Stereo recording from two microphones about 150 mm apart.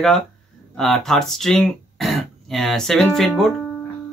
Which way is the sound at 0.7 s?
5° left (ahead or behind).